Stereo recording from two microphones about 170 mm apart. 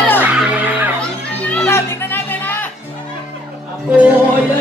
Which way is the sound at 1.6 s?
15° left (ahead or behind).